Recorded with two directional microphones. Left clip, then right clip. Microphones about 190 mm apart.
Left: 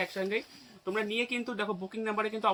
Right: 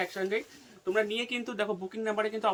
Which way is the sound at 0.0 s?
15° right (ahead or behind).